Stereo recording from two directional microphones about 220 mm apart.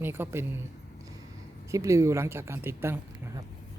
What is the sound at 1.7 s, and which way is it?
A woman's voice, 15° right (ahead or behind).